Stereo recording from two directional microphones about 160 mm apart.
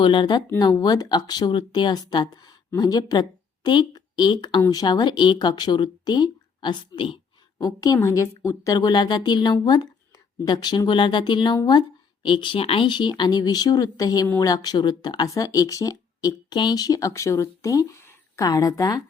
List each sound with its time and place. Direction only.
0.0 s speech: 30° left (ahead or behind)
7.6 s speech: 20° left (ahead or behind)